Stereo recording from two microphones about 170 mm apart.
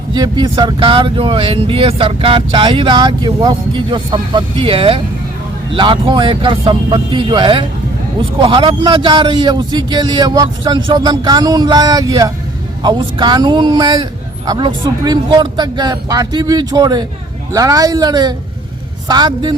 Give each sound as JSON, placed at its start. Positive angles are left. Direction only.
{"t": 0.1, "sound": "a man's voice", "side_deg": -25}